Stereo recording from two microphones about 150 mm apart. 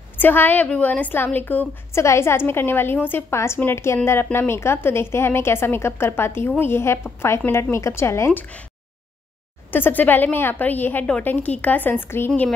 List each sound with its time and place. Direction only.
0.2 s a woman's voice: 15° left (ahead or behind)
9.7 s a woman's voice: 15° left (ahead or behind)
12.3 s speech: centre (ahead or behind)